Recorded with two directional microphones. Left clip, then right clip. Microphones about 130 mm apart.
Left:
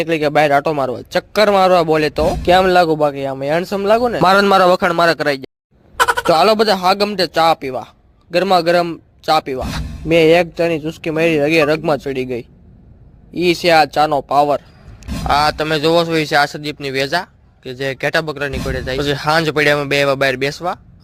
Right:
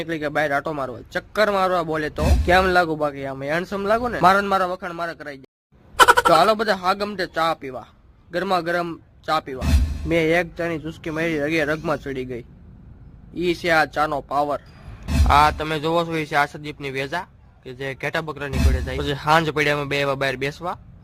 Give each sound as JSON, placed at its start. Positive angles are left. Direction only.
{"t": 0.0, "sound": "a man's voice", "side_deg": 50}
{"t": 4.2, "sound": "a man's voice", "side_deg": 90}
{"t": 6.0, "sound": "fowl", "side_deg": 0}
{"t": 6.2, "sound": "speech", "side_deg": 50}
{"t": 10.1, "sound": "a man's voice", "side_deg": 40}